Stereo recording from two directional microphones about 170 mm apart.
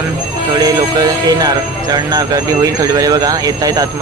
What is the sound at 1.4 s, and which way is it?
Speech, 25° right (ahead or behind).